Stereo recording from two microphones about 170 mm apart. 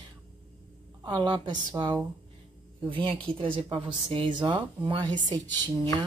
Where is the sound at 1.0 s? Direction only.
25° right (ahead or behind).